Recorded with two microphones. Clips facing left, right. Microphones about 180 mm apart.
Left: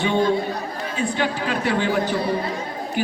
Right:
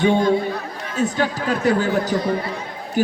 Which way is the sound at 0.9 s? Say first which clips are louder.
Right 3 dB; 40° right (ahead or behind).